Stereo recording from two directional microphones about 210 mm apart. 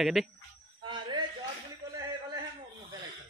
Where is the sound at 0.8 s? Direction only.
25° right (ahead or behind).